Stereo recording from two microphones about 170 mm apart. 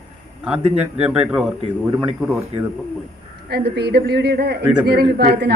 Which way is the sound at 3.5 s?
70° right (ahead or behind).